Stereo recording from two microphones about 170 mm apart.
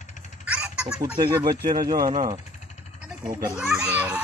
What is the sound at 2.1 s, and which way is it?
Speech, 45° right (ahead or behind).